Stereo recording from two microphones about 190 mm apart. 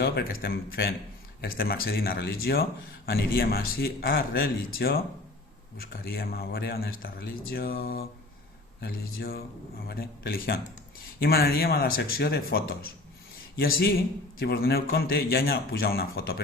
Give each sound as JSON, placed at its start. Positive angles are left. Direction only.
{"t": 0.0, "sound": "speech", "side_deg": 55}
{"t": 14.3, "sound": "speech", "side_deg": 55}